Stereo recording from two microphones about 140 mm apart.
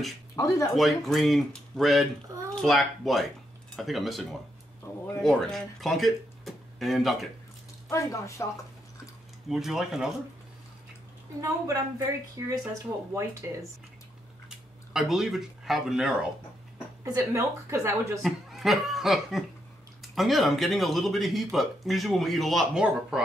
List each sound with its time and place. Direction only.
0.4 s speech: 25° left (ahead or behind)
0.7 s speech: centre (ahead or behind)
7.9 s speech: 20° left (ahead or behind)
9.5 s speech: centre (ahead or behind)
11.4 s a woman's voice: 25° right (ahead or behind)
14.9 s speech: 5° right (ahead or behind)
17.0 s a woman's voice: 20° right (ahead or behind)
18.2 s speech: centre (ahead or behind)